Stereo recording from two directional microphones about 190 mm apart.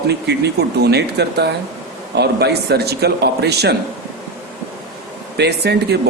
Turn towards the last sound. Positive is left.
turn(degrees=-60)  # may be behind; listen again after turning